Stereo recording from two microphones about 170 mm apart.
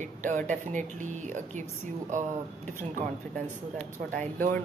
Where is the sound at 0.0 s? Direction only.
45° right (ahead or behind).